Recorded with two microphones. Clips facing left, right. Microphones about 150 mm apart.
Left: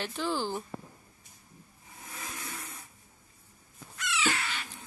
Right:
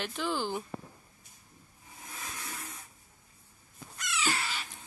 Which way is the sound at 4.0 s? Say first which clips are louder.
Left 2 dB; 40° right (ahead or behind).